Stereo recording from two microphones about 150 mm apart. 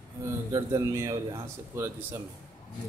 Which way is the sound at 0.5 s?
20° right (ahead or behind).